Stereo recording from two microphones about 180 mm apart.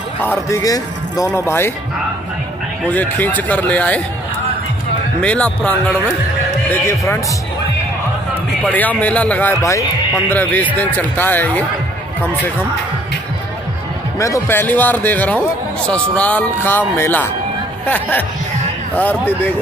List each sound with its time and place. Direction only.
0.2 s speech: 15° left (ahead or behind)
2.9 s speech: 10° left (ahead or behind)
5.2 s speech: 5° left (ahead or behind)
8.6 s speech: 10° left (ahead or behind)
14.1 s speech: 15° left (ahead or behind)